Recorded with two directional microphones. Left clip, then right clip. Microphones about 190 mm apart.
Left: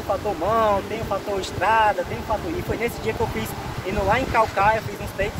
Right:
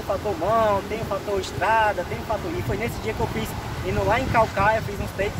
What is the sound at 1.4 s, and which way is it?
Speech, 20° left (ahead or behind).